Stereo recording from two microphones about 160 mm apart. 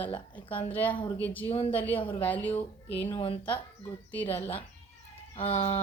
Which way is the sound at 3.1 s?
35° left (ahead or behind).